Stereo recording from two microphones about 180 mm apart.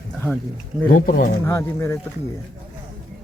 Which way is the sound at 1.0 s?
50° left (ahead or behind).